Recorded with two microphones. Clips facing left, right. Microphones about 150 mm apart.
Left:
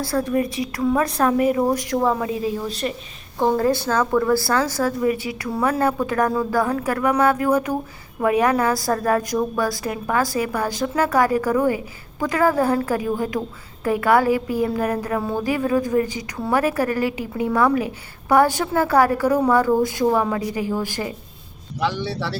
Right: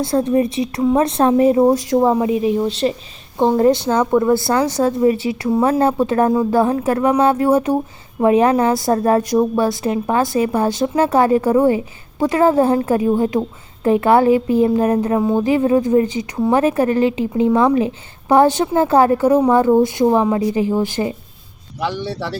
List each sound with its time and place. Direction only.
0.0 s a woman's voice: 20° right (ahead or behind)